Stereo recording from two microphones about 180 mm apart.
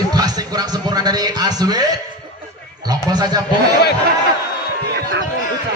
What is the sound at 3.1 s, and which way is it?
Speech, 25° right (ahead or behind).